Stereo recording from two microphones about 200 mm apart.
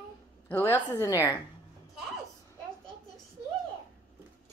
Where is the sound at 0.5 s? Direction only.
10° left (ahead or behind).